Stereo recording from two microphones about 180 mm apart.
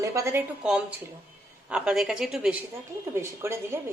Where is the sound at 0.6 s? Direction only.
5° right (ahead or behind).